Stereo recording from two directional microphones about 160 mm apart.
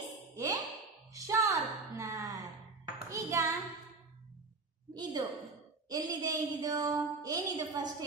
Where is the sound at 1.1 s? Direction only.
20° right (ahead or behind).